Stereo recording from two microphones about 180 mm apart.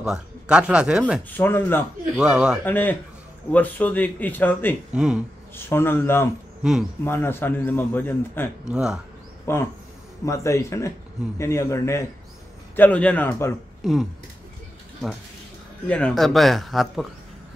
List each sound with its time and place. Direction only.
0.0 s a man's voice: 5° right (ahead or behind)
1.3 s a man's voice: 10° left (ahead or behind)
2.1 s a man's voice: 5° right (ahead or behind)
2.6 s a man's voice: 10° left (ahead or behind)
4.9 s a man's voice: 5° right (ahead or behind)
5.7 s a man's voice: 15° left (ahead or behind)
6.6 s a man's voice: 5° right (ahead or behind)
7.1 s a man's voice: 15° left (ahead or behind)
8.6 s a man's voice: 5° right (ahead or behind)
9.5 s a man's voice: 15° left (ahead or behind)
13.8 s a man's voice: centre (ahead or behind)
15.9 s a man's voice: 5° left (ahead or behind)